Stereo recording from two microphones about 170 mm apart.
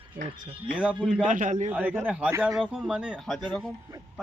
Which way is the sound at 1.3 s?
50° right (ahead or behind).